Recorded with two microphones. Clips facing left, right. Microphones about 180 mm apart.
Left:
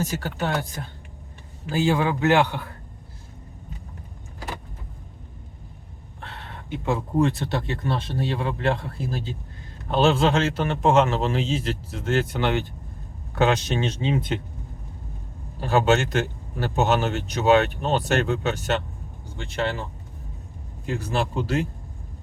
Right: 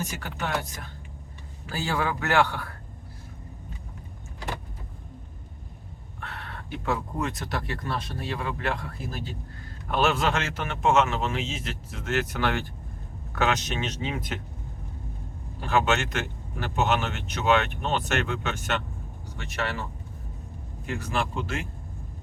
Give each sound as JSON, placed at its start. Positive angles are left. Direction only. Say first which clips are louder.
{"t": 0.0, "sound": "a man's voice", "louder": "left 6 dB", "side_deg": 30}
{"t": 1.7, "sound": "speech", "louder": "left 7 dB", "side_deg": 20}
{"t": 6.1, "sound": "a man's voice", "louder": "even", "side_deg": 25}
{"t": 15.6, "sound": "a man's voice", "louder": "left 5 dB", "side_deg": 35}
{"t": 20.8, "sound": "a man's voice", "louder": "left 4 dB", "side_deg": 35}